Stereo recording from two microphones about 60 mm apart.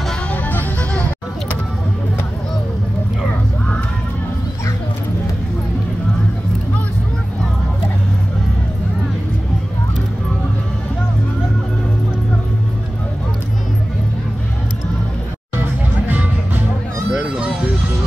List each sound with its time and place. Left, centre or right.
0.3 s music: left
15.6 s music: right
17.1 s music: centre